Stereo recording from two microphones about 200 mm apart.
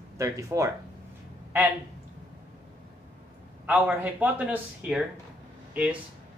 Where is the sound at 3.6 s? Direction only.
10° right (ahead or behind).